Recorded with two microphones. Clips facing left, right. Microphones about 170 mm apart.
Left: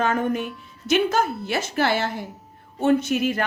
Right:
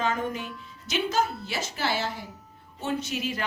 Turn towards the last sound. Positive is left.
turn(degrees=55)  # may be behind; listen again after turning